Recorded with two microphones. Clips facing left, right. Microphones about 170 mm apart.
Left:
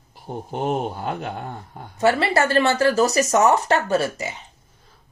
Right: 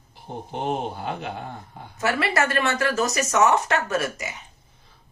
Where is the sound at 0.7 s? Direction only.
40° left (ahead or behind).